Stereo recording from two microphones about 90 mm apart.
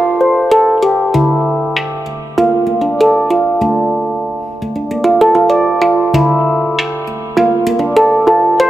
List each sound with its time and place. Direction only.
0.2 s music: centre (ahead or behind)
5.0 s music: centre (ahead or behind)
6.3 s music: 15° left (ahead or behind)
7.3 s music: centre (ahead or behind)